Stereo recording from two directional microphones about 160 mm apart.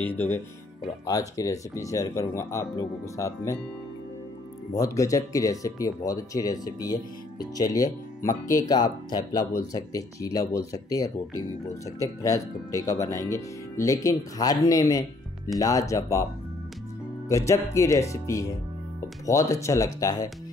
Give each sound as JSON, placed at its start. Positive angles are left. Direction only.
{"t": 0.0, "sound": "speech", "side_deg": 10}
{"t": 1.0, "sound": "speech", "side_deg": 20}
{"t": 4.7, "sound": "speech", "side_deg": 20}
{"t": 17.3, "sound": "speech", "side_deg": 20}